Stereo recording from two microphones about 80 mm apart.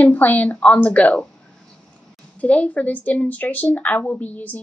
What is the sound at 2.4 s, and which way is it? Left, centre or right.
Speech, centre.